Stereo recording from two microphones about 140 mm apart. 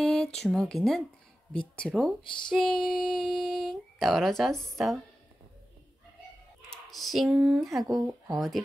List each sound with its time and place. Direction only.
0.0 s speech: centre (ahead or behind)
2.2 s a sound: 35° left (ahead or behind)
2.5 s speech: 5° left (ahead or behind)
6.7 s speech: centre (ahead or behind)
7.8 s speech: 25° right (ahead or behind)
8.4 s speech: centre (ahead or behind)